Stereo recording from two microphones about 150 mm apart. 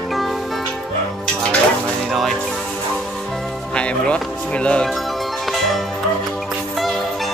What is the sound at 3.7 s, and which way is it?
Music, 5° left (ahead or behind).